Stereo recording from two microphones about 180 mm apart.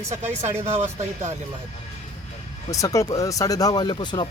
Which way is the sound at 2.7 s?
20° left (ahead or behind).